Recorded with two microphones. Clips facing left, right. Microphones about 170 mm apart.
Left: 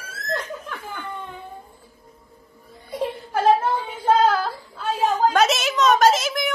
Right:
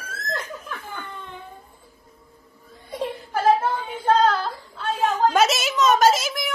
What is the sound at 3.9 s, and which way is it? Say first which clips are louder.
A woman's voice: left 1 dB; 5° left (ahead or behind).